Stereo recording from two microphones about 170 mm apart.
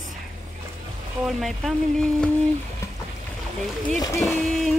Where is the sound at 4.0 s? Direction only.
15° left (ahead or behind).